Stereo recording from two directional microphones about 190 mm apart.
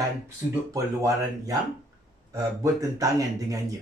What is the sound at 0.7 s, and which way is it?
Speech, 15° right (ahead or behind).